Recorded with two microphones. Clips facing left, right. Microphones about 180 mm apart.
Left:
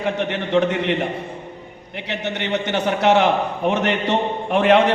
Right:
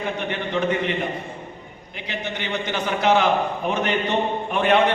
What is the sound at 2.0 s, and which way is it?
A man's voice, 70° left (ahead or behind).